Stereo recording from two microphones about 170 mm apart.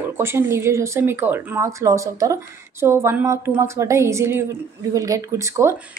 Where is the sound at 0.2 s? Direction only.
15° right (ahead or behind).